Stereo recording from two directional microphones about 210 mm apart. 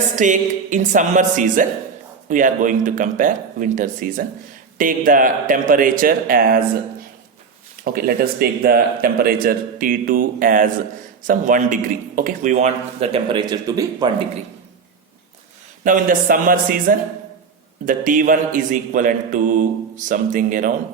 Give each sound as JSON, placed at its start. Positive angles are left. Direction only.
{"t": 0.2, "sound": "a man's voice", "side_deg": -35}
{"t": 7.9, "sound": "a man's voice", "side_deg": -45}
{"t": 15.8, "sound": "a man's voice", "side_deg": -40}